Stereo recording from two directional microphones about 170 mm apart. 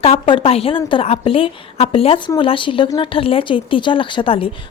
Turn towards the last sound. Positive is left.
turn(degrees=30)  # may be behind; listen again after turning